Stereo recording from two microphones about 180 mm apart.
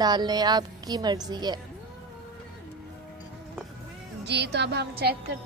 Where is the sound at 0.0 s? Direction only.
20° right (ahead or behind).